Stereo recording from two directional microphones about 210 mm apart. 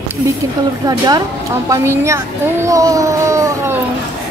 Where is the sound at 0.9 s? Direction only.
20° right (ahead or behind).